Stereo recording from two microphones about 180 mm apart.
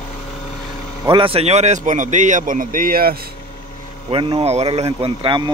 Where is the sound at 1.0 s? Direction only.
30° right (ahead or behind); by 3.3 s 55° right (ahead or behind).